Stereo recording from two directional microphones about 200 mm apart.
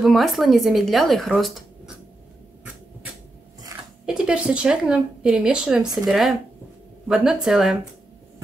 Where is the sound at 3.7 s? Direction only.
15° right (ahead or behind).